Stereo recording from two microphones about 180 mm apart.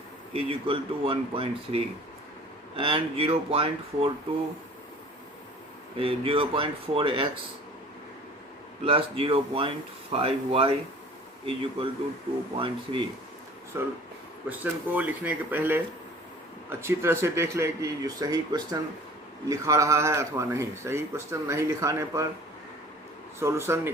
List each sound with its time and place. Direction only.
0.3 s speech: 30° right (ahead or behind)
6.0 s speech: 30° right (ahead or behind)
8.8 s speech: 30° right (ahead or behind)
13.7 s speech: 15° right (ahead or behind)
23.4 s speech: 15° right (ahead or behind)